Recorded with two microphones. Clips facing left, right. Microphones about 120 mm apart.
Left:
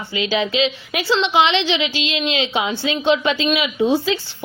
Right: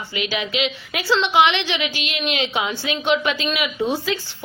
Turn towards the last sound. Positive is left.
turn(degrees=25)  # may be behind; listen again after turning